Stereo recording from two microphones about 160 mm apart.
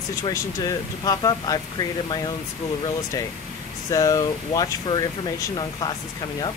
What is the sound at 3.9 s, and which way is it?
Speech, 20° left (ahead or behind).